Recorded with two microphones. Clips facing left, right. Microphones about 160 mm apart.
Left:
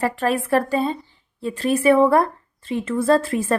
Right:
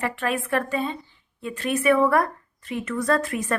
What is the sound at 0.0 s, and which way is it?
A woman's voice, 35° left (ahead or behind).